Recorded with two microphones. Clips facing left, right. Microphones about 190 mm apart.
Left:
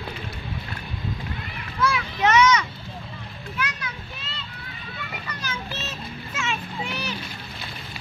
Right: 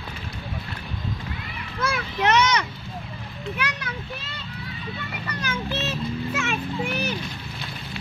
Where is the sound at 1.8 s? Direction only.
55° right (ahead or behind).